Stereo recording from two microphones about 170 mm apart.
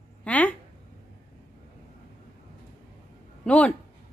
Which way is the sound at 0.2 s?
10° left (ahead or behind).